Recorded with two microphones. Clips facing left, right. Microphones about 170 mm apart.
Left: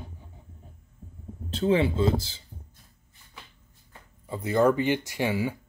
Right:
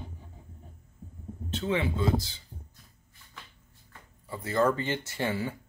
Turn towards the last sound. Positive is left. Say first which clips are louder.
# left 4 dB
turn(degrees=10)  # may be behind; listen again after turning